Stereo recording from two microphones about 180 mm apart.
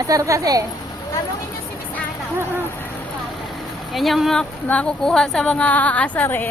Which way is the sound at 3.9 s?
Centre (ahead or behind).